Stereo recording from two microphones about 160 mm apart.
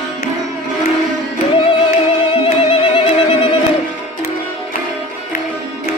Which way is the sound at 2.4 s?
35° left (ahead or behind).